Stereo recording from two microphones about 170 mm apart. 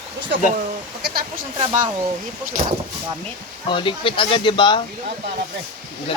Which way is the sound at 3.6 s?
30° left (ahead or behind).